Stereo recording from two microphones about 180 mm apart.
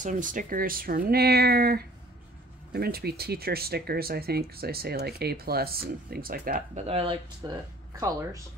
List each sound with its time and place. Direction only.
0.0 s speech: 45° right (ahead or behind)
6.9 s speech: 30° right (ahead or behind)
8.0 s speech: 15° right (ahead or behind)